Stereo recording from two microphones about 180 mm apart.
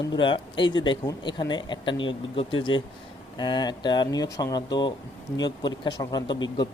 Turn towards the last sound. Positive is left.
turn(degrees=25)  # may be behind; listen again after turning